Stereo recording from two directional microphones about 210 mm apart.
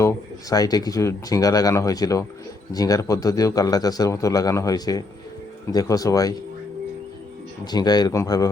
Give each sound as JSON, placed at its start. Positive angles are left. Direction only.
{"t": 0.0, "sound": "a man's voice", "side_deg": 15}
{"t": 7.6, "sound": "a man's voice", "side_deg": 20}